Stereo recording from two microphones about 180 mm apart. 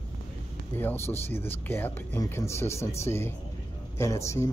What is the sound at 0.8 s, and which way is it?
Speech, 10° left (ahead or behind).